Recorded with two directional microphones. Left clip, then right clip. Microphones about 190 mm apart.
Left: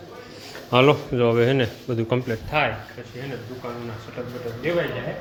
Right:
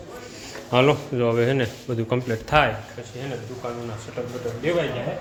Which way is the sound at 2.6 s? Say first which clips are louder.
Right 3 dB; 35° right (ahead or behind).